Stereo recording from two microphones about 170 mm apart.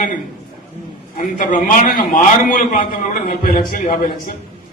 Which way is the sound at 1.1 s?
50° left (ahead or behind).